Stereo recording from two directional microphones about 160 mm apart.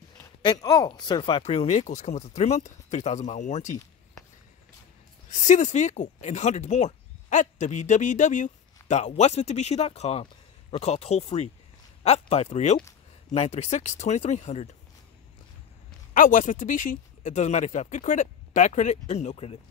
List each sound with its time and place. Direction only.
0.4 s speech: 25° left (ahead or behind); by 3.7 s 50° left (ahead or behind)
5.3 s speech: 50° left (ahead or behind)
16.1 s speech: 55° left (ahead or behind); by 19.6 s 40° left (ahead or behind)